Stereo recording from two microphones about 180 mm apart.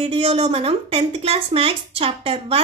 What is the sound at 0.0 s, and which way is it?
A woman's voice, 30° right (ahead or behind).